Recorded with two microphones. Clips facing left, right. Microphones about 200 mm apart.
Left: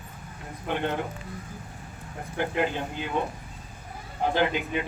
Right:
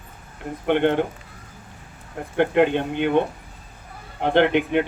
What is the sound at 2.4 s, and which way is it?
Speech, 65° right (ahead or behind).